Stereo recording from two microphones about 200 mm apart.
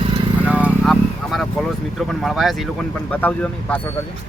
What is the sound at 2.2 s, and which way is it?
Speech, centre (ahead or behind).